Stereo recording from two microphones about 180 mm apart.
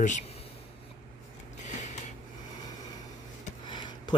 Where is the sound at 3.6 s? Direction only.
25° left (ahead or behind).